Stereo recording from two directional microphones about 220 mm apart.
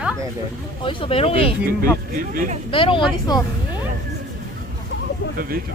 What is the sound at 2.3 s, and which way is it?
Speech, 40° right (ahead or behind).